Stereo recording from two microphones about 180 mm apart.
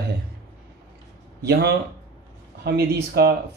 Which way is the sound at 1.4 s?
65° right (ahead or behind).